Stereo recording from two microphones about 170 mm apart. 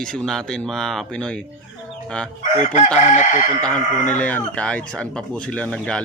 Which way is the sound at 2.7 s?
45° left (ahead or behind).